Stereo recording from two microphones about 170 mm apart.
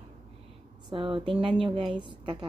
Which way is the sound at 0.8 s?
30° right (ahead or behind).